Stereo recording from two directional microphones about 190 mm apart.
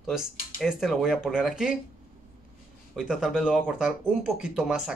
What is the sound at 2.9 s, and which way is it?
Speech, centre (ahead or behind).